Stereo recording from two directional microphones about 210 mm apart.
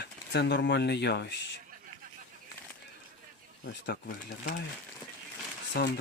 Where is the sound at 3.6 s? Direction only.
50° left (ahead or behind).